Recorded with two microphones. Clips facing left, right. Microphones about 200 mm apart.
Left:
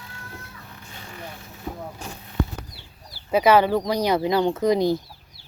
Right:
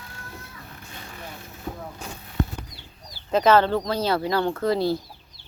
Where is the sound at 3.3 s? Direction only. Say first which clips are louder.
Left 1 dB; 10° left (ahead or behind).